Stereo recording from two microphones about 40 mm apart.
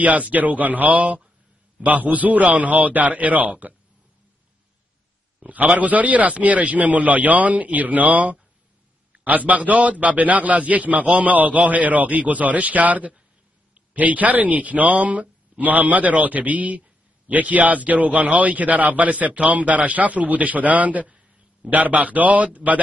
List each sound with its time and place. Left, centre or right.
0.0 s a man's voice: right
5.4 s a man's voice: right